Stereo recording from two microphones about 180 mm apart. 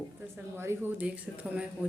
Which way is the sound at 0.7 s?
15° right (ahead or behind).